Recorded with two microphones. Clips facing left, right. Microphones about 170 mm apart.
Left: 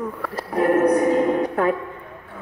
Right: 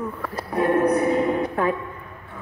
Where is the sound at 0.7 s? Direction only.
40° left (ahead or behind).